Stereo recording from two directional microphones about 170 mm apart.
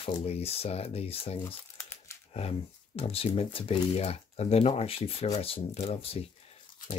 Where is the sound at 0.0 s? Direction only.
35° left (ahead or behind).